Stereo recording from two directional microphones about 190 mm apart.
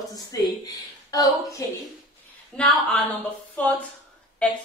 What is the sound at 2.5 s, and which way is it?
Speech, 5° left (ahead or behind).